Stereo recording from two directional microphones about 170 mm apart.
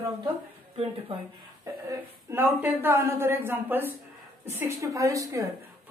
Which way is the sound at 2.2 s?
15° right (ahead or behind).